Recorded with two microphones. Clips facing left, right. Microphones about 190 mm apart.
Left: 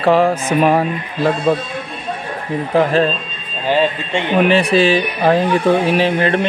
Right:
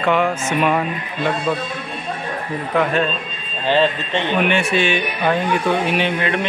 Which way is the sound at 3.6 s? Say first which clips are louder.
Left 1 dB; 10° left (ahead or behind).